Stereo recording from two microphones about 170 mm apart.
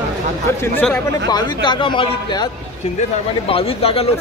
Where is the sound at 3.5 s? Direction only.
35° left (ahead or behind).